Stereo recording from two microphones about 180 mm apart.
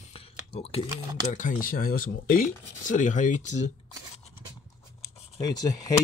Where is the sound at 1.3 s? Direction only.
50° left (ahead or behind).